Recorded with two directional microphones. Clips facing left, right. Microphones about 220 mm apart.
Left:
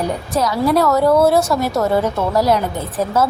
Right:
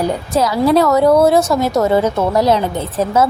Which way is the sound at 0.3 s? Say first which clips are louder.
Right 3 dB; 25° right (ahead or behind).